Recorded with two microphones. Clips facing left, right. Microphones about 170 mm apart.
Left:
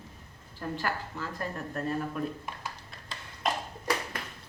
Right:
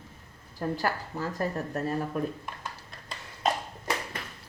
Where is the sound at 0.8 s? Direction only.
40° right (ahead or behind).